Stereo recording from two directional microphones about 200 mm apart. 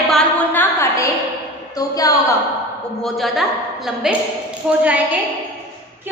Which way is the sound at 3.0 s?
Centre (ahead or behind).